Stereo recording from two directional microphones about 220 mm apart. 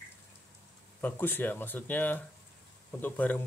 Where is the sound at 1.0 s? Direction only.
10° left (ahead or behind).